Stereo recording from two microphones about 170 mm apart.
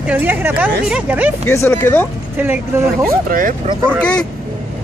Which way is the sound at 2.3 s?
10° right (ahead or behind).